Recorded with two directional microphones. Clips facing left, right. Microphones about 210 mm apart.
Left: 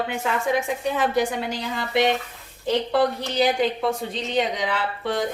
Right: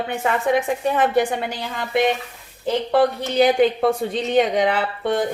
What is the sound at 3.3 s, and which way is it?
A woman's voice, 55° right (ahead or behind).